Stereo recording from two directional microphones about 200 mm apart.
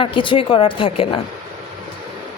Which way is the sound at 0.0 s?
25° left (ahead or behind).